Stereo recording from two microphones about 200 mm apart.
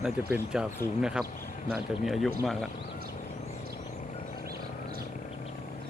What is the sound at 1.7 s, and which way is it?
Speech, centre (ahead or behind).